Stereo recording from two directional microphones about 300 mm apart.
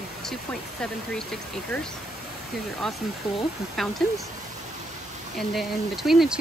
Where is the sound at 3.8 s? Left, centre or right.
Centre.